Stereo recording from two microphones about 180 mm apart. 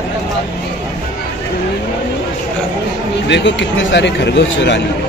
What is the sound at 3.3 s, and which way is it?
Speech, 80° left.